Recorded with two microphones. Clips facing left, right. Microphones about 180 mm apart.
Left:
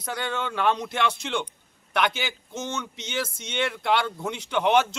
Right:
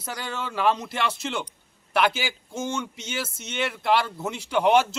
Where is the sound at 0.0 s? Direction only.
5° right (ahead or behind).